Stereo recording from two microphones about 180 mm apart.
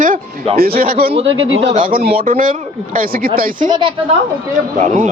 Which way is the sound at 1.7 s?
50° right (ahead or behind).